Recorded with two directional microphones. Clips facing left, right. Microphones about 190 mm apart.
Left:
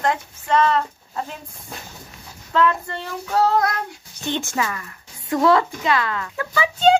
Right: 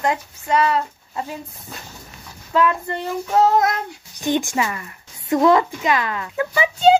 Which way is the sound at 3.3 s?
20° right (ahead or behind).